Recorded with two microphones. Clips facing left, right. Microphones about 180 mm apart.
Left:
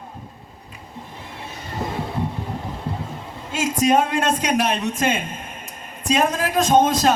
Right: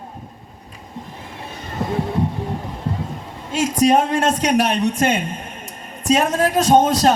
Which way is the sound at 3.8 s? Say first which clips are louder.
Right 2 dB; 35° right (ahead or behind).